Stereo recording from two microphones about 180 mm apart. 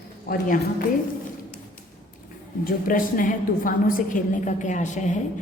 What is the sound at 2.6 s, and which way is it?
A woman's voice, 50° left (ahead or behind).